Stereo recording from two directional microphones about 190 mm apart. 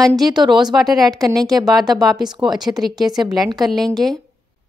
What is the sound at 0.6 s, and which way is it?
Speech, centre (ahead or behind).